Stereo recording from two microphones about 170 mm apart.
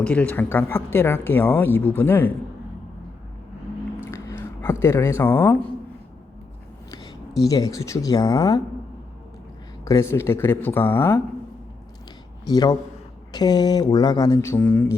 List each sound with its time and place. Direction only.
0.0 s speech: 10° left (ahead or behind)
4.0 s a sound: 15° left (ahead or behind)
6.9 s speech: 20° left (ahead or behind)
9.8 s speech: 15° left (ahead or behind)
12.5 s speech: 25° left (ahead or behind)